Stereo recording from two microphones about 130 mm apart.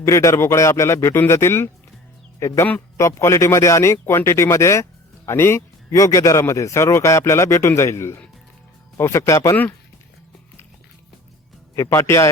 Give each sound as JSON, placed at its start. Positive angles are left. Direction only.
{"t": 0.0, "sound": "speech", "side_deg": 25}
{"t": 11.8, "sound": "speech", "side_deg": 20}